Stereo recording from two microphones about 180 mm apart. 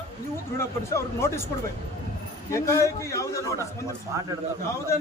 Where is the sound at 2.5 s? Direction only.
15° left (ahead or behind).